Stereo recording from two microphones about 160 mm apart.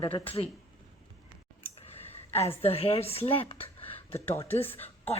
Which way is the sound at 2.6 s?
40° left (ahead or behind).